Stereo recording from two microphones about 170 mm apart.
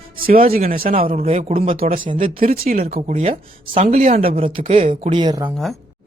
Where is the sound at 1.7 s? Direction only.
55° right (ahead or behind).